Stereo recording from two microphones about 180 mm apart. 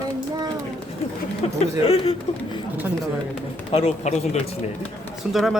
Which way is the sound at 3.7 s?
35° left (ahead or behind).